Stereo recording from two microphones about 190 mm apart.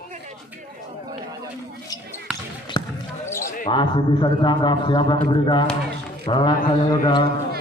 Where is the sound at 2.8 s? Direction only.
20° left (ahead or behind).